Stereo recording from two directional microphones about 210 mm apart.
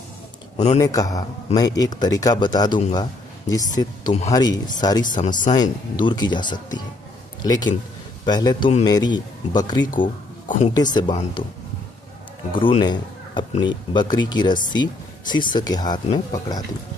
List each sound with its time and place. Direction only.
0.7 s a man's voice: 15° left (ahead or behind)
5.0 s speech: 40° left (ahead or behind)
5.6 s speech: 20° left (ahead or behind)
12.5 s speech: 25° left (ahead or behind)